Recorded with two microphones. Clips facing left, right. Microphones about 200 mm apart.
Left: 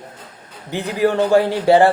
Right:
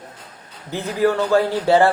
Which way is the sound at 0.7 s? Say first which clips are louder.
Left 1 dB; 15° left (ahead or behind).